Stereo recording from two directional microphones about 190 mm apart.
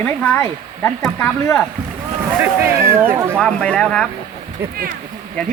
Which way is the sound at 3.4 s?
5° left (ahead or behind).